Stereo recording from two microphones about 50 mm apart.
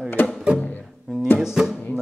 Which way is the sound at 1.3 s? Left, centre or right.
Centre.